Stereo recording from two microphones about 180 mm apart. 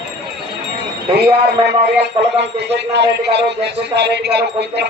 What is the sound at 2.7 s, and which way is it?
A man's voice, 70° right (ahead or behind).